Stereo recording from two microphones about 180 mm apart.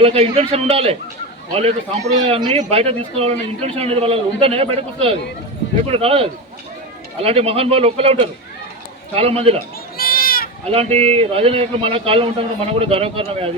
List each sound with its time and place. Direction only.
0.0 s speech: 35° right (ahead or behind)
2.2 s speech: 35° right (ahead or behind)
10.0 s sheep: 55° left (ahead or behind)
10.7 s speech: 35° right (ahead or behind)